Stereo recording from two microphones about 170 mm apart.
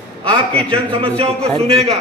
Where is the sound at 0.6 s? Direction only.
35° right (ahead or behind).